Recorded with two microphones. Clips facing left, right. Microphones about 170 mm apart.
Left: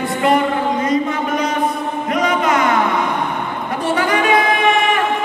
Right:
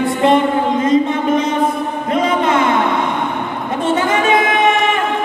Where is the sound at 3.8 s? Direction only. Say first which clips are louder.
Right 2 dB; 25° right (ahead or behind).